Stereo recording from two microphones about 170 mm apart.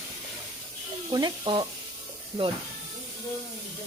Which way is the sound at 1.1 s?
25° right (ahead or behind).